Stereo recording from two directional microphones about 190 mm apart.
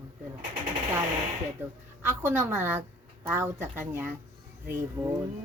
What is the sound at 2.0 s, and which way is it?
Speech, 10° right (ahead or behind).